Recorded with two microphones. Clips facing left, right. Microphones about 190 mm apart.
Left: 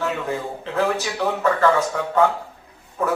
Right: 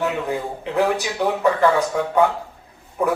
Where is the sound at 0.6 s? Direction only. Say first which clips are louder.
Right 2 dB; 15° right (ahead or behind).